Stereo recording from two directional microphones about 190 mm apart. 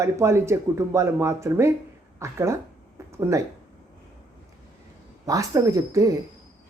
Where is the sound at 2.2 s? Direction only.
15° right (ahead or behind).